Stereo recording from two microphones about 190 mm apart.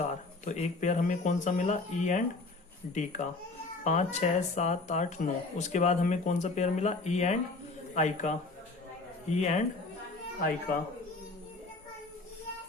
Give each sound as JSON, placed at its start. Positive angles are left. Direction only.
{"t": 0.0, "sound": "speech", "side_deg": 35}